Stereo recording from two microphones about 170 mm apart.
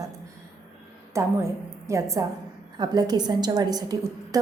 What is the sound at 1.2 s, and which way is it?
A woman's voice, 15° right (ahead or behind).